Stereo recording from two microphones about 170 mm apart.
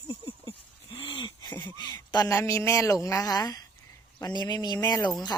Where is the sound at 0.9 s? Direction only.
30° left (ahead or behind).